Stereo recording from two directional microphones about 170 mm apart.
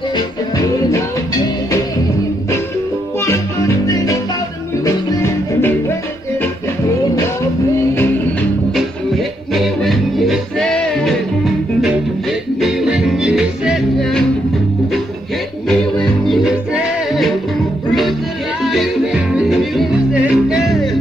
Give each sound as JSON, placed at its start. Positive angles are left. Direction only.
{"t": 3.3, "sound": "music", "side_deg": 20}
{"t": 9.5, "sound": "music", "side_deg": 0}
{"t": 15.7, "sound": "music", "side_deg": 0}
{"t": 18.6, "sound": "music", "side_deg": 0}